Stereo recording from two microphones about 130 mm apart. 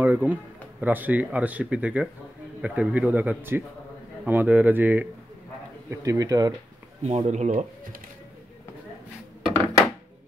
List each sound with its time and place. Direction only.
0.0 s speech: 15° right (ahead or behind)
5.9 s speech: 25° right (ahead or behind)
7.0 s speech: 60° right (ahead or behind); by 8.0 s 80° right